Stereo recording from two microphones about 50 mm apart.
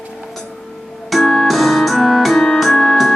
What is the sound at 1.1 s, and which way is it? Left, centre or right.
Keyboard, centre.